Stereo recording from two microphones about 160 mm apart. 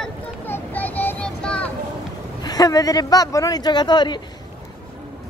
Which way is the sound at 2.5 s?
25° left (ahead or behind).